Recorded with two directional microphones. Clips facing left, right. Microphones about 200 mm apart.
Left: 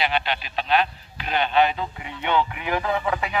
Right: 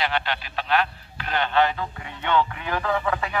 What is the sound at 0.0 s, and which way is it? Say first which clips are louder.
Speech: left 2 dB; 15° left (ahead or behind).